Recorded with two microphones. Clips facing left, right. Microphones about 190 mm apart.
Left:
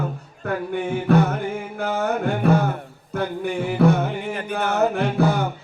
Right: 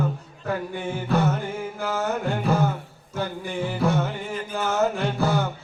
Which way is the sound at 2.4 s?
60° left (ahead or behind).